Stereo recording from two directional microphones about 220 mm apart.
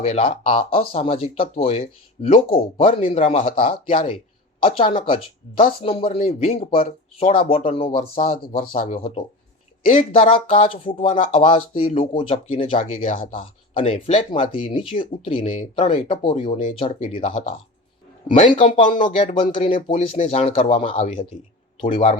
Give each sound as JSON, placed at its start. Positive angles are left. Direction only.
{"t": 0.0, "sound": "speech", "side_deg": 25}